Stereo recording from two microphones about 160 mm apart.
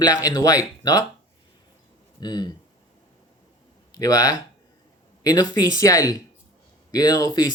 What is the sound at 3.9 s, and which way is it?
Speech, 20° left (ahead or behind).